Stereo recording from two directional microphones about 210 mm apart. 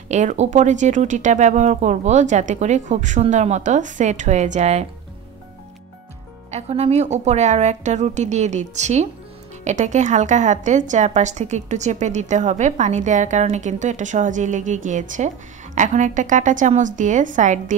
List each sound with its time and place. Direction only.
0.1 s a woman's voice: 35° right (ahead or behind)
6.5 s a woman's voice: 30° right (ahead or behind)